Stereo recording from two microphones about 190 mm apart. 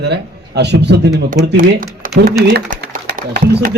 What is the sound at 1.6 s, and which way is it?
A man's voice, 50° right (ahead or behind).